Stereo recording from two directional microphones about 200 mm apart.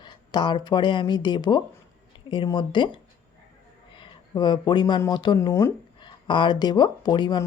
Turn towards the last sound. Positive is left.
turn(degrees=20)  # may be behind; listen again after turning